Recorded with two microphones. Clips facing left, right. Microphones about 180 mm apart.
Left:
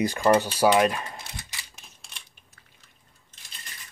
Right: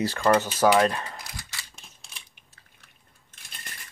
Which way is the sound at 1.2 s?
25° left (ahead or behind).